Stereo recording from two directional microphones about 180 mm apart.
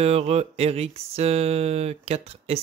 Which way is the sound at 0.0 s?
35° right (ahead or behind).